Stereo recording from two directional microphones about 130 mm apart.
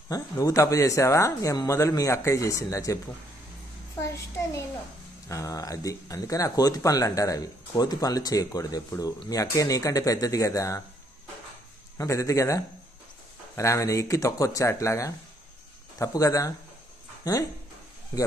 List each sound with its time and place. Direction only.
0.1 s speech: 25° left (ahead or behind)
4.0 s speech: 25° left (ahead or behind)
12.0 s speech: 25° left (ahead or behind)